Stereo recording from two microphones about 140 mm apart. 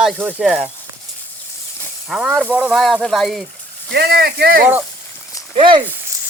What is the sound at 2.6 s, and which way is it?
Speech, centre (ahead or behind).